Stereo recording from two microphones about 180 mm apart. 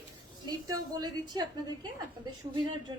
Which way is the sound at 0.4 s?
20° right (ahead or behind).